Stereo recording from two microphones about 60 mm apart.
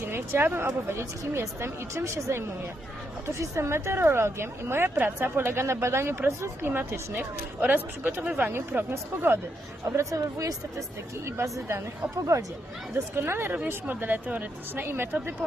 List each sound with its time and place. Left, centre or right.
0.0 s a woman's voice: right
9.8 s speech: right
11.3 s a woman's voice: right
12.1 s speech: right
13.1 s a woman's voice: right